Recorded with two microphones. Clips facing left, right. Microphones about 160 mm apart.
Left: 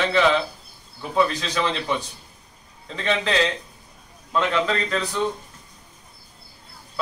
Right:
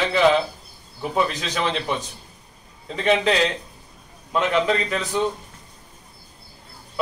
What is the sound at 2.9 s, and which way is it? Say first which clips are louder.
A man's voice: right 4 dB; 15° right (ahead or behind).